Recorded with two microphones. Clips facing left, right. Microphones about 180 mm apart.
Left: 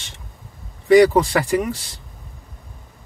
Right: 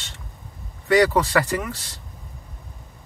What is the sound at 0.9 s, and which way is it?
Speech, 10° left (ahead or behind).